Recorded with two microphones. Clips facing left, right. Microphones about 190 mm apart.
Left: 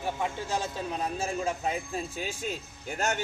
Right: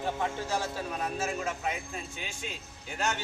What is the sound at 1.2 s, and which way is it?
A man's voice, 30° left (ahead or behind).